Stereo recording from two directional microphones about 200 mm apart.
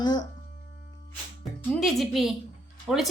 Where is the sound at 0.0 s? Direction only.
20° left (ahead or behind).